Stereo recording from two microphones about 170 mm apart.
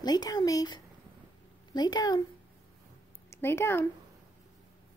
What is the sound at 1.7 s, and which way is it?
Speech, 25° left (ahead or behind).